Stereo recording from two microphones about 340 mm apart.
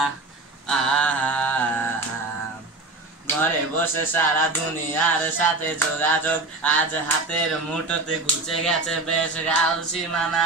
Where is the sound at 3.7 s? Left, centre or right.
Centre.